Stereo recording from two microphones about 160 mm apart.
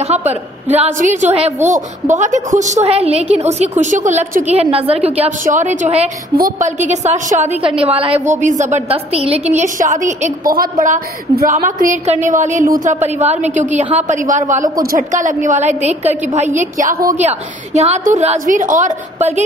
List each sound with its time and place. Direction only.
0.0 s a woman's voice: 45° right (ahead or behind)
4.6 s a woman's voice: 35° right (ahead or behind)
5.4 s a woman's voice: 50° right (ahead or behind)
6.3 s a woman's voice: 65° right (ahead or behind)
6.8 s a woman's voice: 45° right (ahead or behind)
8.3 s a woman's voice: 50° right (ahead or behind)
10.5 s a woman's voice: 60° right (ahead or behind)
13.0 s a woman's voice: 45° right (ahead or behind)
16.9 s a woman's voice: 20° right (ahead or behind)
17.2 s a woman's voice: 45° right (ahead or behind)